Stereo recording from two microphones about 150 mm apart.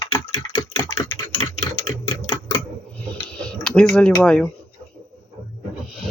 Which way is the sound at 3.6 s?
5° left (ahead or behind).